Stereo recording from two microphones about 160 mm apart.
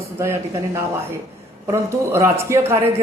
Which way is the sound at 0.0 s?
15° right (ahead or behind).